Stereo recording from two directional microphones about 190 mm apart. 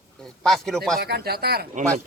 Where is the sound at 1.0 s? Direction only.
55° right (ahead or behind).